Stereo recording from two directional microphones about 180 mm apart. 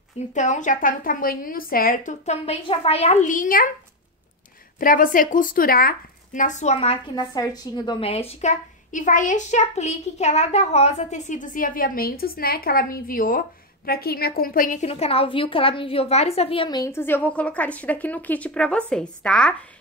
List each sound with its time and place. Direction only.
0.3 s a woman's voice: 45° left (ahead or behind)
4.7 s a woman's voice: 50° left (ahead or behind); by 7.2 s 35° left (ahead or behind)
7.3 s a woman's voice: 20° left (ahead or behind); by 19.5 s 5° left (ahead or behind)